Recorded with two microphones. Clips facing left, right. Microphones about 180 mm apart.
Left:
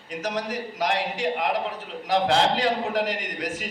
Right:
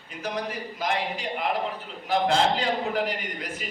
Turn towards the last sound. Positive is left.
turn(degrees=85)